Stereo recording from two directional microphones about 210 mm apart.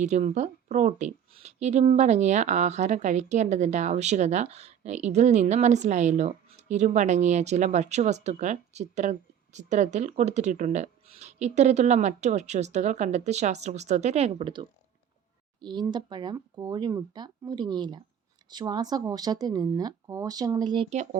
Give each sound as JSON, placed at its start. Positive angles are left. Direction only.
{"t": 0.0, "sound": "speech", "side_deg": -35}